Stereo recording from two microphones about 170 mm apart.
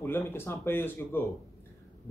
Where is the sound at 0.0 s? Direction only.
15° left (ahead or behind).